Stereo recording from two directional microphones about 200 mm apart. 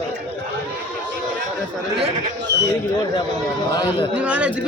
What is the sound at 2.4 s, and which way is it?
Speech, 60° right (ahead or behind).